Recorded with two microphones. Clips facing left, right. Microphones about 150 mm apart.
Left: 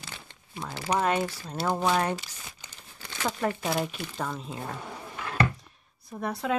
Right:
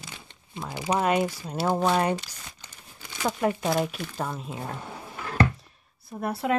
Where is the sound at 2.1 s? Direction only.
5° left (ahead or behind).